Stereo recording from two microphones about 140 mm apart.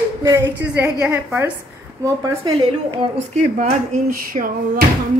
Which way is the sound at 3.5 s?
80° right.